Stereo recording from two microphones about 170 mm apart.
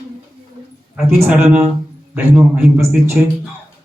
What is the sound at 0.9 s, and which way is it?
A man's voice, 10° right (ahead or behind).